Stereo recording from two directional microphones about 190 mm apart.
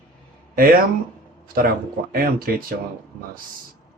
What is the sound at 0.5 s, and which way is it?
Speech, 50° right (ahead or behind).